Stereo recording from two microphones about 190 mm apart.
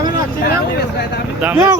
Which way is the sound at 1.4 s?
5° right (ahead or behind).